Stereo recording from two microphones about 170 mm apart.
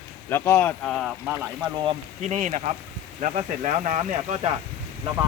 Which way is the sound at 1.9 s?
40° right (ahead or behind).